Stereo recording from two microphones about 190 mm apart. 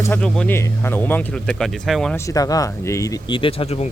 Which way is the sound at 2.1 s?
15° left (ahead or behind).